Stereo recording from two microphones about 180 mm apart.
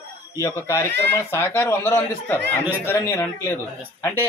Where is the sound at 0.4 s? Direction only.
15° left (ahead or behind).